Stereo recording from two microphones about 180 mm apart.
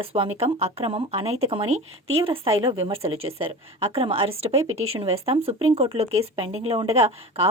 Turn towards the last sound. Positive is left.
turn(degrees=-35)  # may be behind; listen again after turning